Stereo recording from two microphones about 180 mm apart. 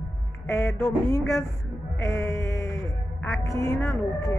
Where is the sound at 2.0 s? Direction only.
15° left (ahead or behind).